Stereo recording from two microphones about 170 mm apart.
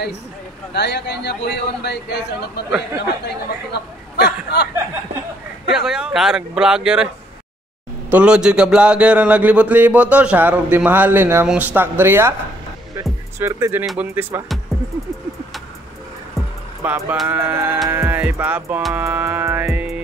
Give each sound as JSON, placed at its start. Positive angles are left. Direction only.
{"t": 0.7, "sound": "a man's voice", "side_deg": 80}
{"t": 3.7, "sound": "speech", "side_deg": 75}
{"t": 5.7, "sound": "speech", "side_deg": -5}
{"t": 8.1, "sound": "speech", "side_deg": -5}
{"t": 13.4, "sound": "speech", "side_deg": -15}
{"t": 14.7, "sound": "music", "side_deg": 0}
{"t": 16.8, "sound": "speech", "side_deg": -10}